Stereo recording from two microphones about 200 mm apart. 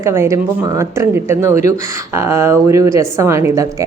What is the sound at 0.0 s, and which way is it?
A woman's voice, 15° right (ahead or behind).